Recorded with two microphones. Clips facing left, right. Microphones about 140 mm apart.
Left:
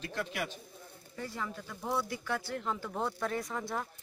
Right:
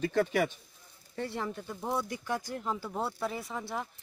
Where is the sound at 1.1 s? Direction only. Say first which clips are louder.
Right 4 dB; 30° right (ahead or behind).